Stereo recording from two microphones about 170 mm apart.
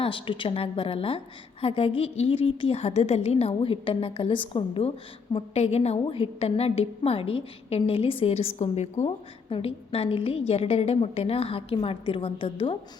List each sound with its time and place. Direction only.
0.0 s a woman's voice: 30° left (ahead or behind)